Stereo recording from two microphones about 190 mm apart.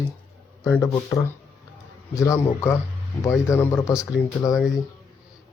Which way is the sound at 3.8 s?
5° right (ahead or behind).